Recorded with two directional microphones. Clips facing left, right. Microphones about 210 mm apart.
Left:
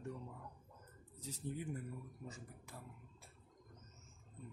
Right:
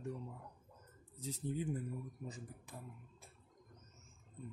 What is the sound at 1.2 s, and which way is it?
Speech, 20° right (ahead or behind).